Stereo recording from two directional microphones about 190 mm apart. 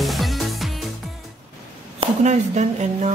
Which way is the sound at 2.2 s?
35° right (ahead or behind).